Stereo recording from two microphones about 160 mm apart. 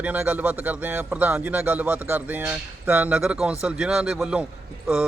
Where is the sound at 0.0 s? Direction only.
10° right (ahead or behind).